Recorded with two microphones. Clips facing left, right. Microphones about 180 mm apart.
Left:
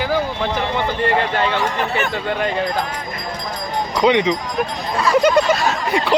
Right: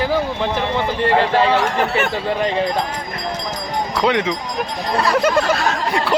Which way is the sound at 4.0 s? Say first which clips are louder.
Left 4 dB; centre (ahead or behind).